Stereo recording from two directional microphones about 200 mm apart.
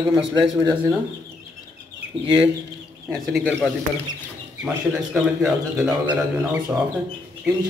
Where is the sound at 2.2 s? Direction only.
25° right (ahead or behind).